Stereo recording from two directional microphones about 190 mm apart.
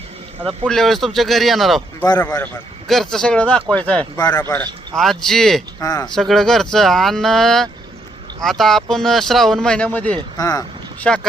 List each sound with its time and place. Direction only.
0.4 s speech: centre (ahead or behind)
4.2 s speech: 20° left (ahead or behind)
4.9 s speech: centre (ahead or behind)
5.8 s speech: 20° left (ahead or behind)
6.1 s speech: centre (ahead or behind)
10.3 s speech: 20° left (ahead or behind)
11.0 s speech: 5° left (ahead or behind)